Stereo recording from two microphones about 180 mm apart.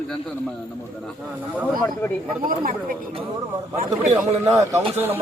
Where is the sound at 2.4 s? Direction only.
50° right (ahead or behind).